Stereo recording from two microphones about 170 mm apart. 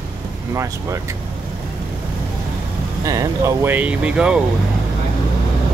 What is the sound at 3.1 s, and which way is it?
Speech, 20° right (ahead or behind).